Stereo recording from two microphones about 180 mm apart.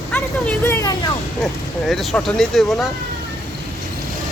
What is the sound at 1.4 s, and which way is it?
Speech, centre (ahead or behind).